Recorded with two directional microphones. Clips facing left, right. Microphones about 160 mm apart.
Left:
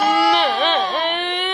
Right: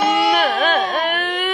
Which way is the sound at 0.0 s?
20° right (ahead or behind).